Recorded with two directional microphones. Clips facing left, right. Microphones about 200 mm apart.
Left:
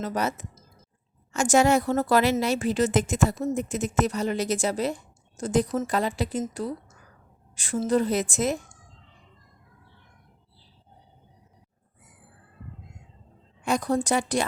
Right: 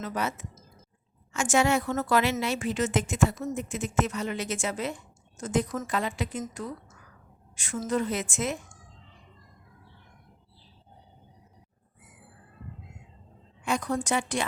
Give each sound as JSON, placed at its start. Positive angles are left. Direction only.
{"t": 0.0, "sound": "a woman's voice", "side_deg": 40}
{"t": 13.7, "sound": "a woman's voice", "side_deg": 35}